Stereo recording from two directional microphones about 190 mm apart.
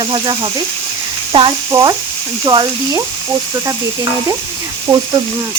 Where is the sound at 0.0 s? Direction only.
25° right (ahead or behind).